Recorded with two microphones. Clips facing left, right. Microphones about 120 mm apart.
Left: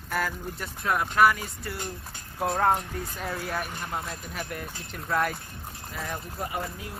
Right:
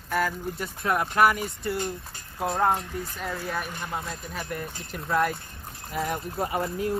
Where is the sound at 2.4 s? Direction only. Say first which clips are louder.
Even; centre (ahead or behind).